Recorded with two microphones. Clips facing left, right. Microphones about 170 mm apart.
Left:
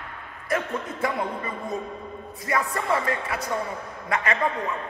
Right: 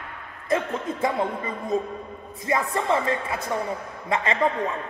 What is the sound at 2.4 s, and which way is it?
Speech, 25° right (ahead or behind).